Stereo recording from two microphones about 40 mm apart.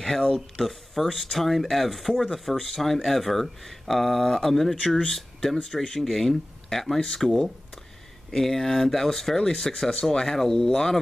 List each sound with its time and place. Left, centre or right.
0.0 s speech: centre